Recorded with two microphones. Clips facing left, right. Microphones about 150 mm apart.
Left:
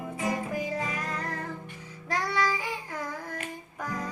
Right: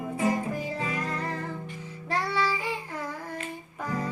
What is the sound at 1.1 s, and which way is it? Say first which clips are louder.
Music: right 2 dB; 5° right (ahead or behind).